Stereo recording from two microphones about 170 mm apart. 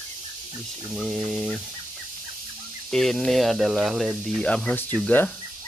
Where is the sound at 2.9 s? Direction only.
Centre (ahead or behind).